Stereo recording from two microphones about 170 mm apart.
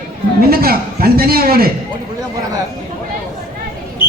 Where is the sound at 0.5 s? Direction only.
65° right (ahead or behind).